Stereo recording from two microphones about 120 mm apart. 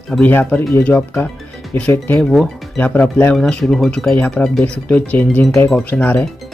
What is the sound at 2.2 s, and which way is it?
Speech, 5° left (ahead or behind).